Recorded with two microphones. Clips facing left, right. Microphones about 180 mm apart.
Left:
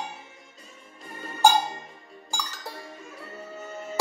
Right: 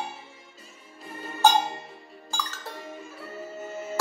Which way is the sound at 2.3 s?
15° left (ahead or behind).